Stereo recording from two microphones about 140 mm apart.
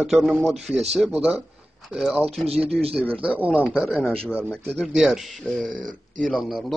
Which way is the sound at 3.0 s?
10° left (ahead or behind).